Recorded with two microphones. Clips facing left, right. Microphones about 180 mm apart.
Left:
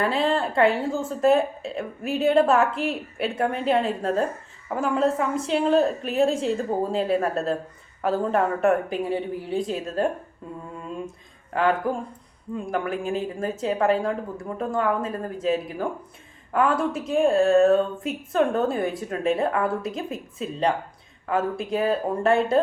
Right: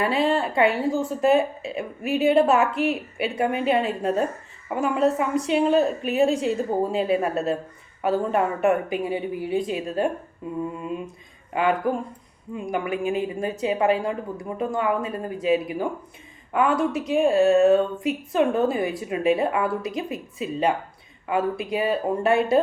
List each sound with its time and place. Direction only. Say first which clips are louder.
0.0 s a woman's voice: right 1 dB; 5° right (ahead or behind)
11.5 s a woman's voice: even; 5° right (ahead or behind)